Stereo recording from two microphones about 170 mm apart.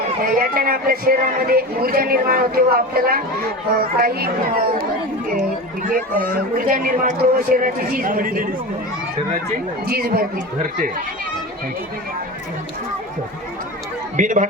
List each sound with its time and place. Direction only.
0.2 s speech: 60° right (ahead or behind)
5.9 s speech: 55° right (ahead or behind)
9.8 s speech: 65° right (ahead or behind)
14.2 s speech: 50° right (ahead or behind)